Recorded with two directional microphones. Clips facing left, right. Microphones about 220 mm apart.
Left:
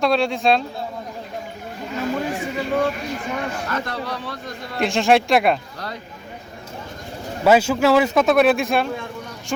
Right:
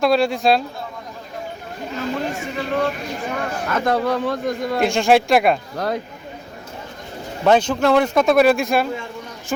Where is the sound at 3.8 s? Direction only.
45° right (ahead or behind).